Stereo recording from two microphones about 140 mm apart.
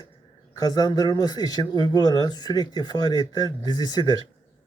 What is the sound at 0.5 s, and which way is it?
Speech, 30° left (ahead or behind).